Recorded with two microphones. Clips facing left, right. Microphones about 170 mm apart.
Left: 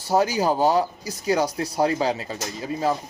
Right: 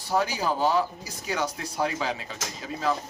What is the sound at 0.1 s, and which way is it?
Speech, 40° left (ahead or behind).